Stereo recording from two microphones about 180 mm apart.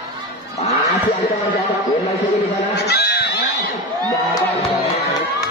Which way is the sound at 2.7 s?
65° left (ahead or behind).